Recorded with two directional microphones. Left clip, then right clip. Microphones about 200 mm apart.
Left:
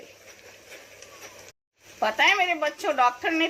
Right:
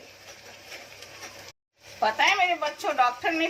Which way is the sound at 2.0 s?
45° left (ahead or behind).